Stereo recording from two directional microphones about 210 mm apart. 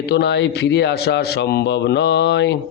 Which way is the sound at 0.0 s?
55° left (ahead or behind).